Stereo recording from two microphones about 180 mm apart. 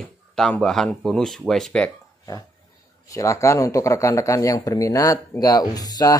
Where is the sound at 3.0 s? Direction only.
20° left (ahead or behind).